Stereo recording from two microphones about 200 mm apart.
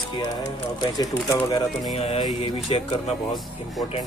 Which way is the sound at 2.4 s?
30° left (ahead or behind).